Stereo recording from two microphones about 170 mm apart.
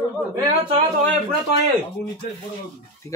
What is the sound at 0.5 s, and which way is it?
Speech, 40° right (ahead or behind).